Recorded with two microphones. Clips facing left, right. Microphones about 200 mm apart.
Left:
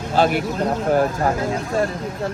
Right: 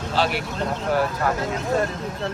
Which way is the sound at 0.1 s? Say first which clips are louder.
Left 6 dB; 50° left (ahead or behind).